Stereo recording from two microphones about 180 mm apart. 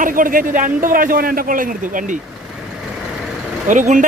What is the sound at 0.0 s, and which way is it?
Speech, 50° right (ahead or behind).